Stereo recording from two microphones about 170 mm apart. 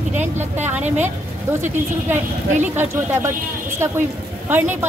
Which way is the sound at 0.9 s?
10° right (ahead or behind).